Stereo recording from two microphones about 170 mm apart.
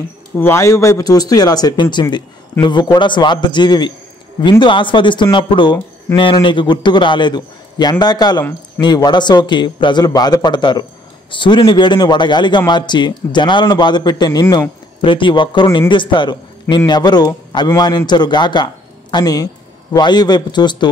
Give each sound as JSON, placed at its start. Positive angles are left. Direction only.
{"t": 0.4, "sound": "a man's voice", "side_deg": 15}